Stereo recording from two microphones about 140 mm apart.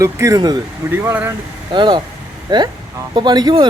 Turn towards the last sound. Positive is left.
turn(degrees=-30)  # may be behind; listen again after turning